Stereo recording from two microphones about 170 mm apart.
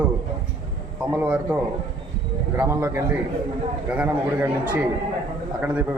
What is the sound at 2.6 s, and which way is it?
Speech, 15° right (ahead or behind).